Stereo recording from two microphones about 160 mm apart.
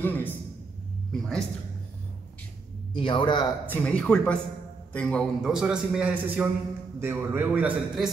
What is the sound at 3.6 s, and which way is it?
Speech, 10° left (ahead or behind).